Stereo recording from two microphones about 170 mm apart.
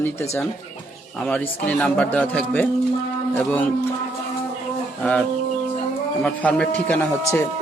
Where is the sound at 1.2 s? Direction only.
10° left (ahead or behind).